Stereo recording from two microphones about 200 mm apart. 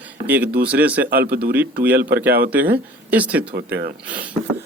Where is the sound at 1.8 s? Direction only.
10° right (ahead or behind).